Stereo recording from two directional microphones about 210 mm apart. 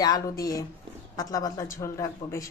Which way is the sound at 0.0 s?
15° left (ahead or behind).